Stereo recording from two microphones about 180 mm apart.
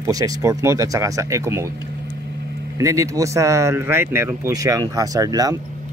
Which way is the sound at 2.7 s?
15° right (ahead or behind).